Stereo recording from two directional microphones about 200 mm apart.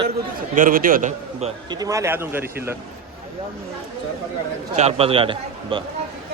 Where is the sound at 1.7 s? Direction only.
15° right (ahead or behind).